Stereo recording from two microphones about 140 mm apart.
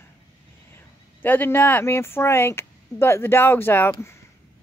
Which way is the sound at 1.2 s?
15° left (ahead or behind).